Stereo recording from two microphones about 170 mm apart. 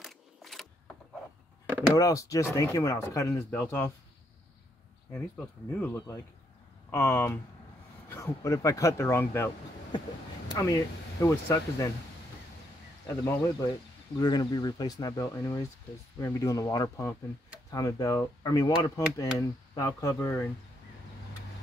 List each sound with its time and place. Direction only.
0.0 s a sound: centre (ahead or behind)
2.0 s speech: 20° left (ahead or behind)
5.1 s speech: 10° left (ahead or behind)
10.5 s speech: 20° left (ahead or behind)
13.2 s speech: 15° left (ahead or behind)